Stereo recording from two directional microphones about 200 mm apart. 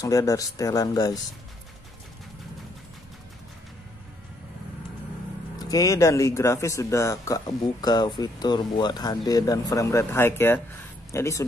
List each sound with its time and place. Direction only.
0.0 s speech: 15° left (ahead or behind)
5.6 s speech: 15° left (ahead or behind)